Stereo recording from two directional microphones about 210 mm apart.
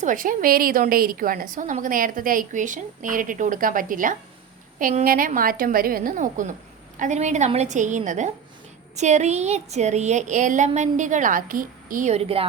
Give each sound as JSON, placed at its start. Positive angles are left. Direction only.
{"t": 0.0, "sound": "a woman's voice", "side_deg": -40}